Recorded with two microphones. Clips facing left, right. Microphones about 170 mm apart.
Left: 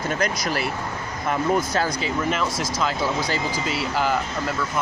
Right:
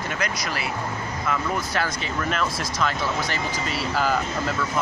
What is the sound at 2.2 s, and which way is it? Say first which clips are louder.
Speech: even; 20° left (ahead or behind).